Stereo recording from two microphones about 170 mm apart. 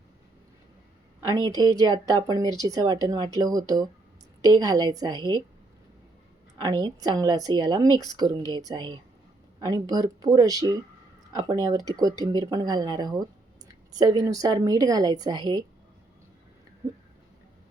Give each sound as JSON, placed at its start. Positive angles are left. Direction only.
{"t": 1.2, "sound": "speech", "side_deg": -25}
{"t": 6.6, "sound": "speech", "side_deg": -25}